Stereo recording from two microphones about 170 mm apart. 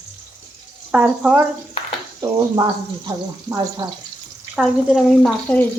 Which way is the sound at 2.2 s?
25° right (ahead or behind).